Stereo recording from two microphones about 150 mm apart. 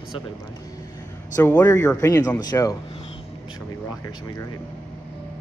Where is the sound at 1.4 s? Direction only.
10° left (ahead or behind).